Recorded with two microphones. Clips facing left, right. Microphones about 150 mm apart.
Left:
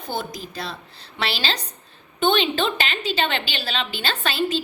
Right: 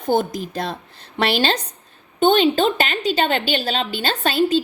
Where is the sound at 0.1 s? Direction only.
50° right (ahead or behind).